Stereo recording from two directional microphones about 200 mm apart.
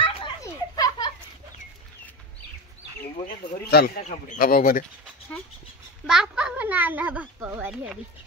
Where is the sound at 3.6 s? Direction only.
50° left (ahead or behind).